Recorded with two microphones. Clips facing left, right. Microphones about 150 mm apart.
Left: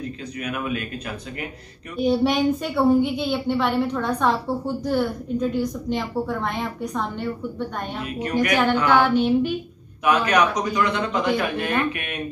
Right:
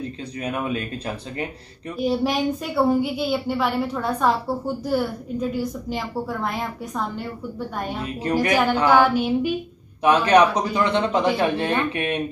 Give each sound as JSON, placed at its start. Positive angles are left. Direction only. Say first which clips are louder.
{"t": 0.4, "sound": "speech", "louder": "right 2 dB", "side_deg": -30}
{"t": 2.0, "sound": "a woman's voice", "louder": "left 2 dB", "side_deg": 0}
{"t": 8.2, "sound": "a man's voice", "louder": "right 1 dB", "side_deg": -30}
{"t": 8.8, "sound": "child singing", "louder": "right 2 dB", "side_deg": -10}
{"t": 10.0, "sound": "a man's voice", "louder": "right 3 dB", "side_deg": -30}